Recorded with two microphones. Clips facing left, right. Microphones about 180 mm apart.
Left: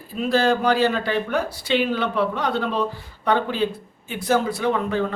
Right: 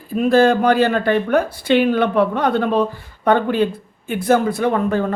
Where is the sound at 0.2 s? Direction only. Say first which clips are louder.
Right 6 dB; 50° right (ahead or behind).